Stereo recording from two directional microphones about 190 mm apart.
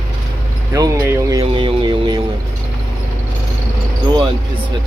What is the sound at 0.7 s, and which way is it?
Speech, 15° right (ahead or behind).